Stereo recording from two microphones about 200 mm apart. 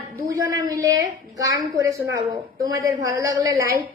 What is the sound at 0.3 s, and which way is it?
A woman's voice, 15° right (ahead or behind).